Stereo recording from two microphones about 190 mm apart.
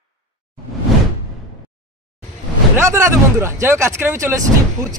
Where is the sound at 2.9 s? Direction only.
15° right (ahead or behind).